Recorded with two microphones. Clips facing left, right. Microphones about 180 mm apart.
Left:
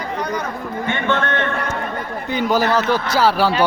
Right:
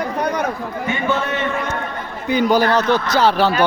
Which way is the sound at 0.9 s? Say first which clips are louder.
Even; 5° right (ahead or behind).